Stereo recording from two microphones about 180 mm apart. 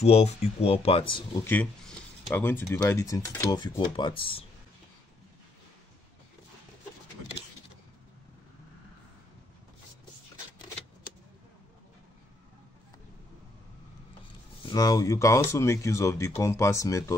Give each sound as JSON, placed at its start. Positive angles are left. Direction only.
{"t": 0.0, "sound": "speech", "side_deg": 35}
{"t": 1.4, "sound": "speech", "side_deg": 10}
{"t": 14.7, "sound": "speech", "side_deg": 20}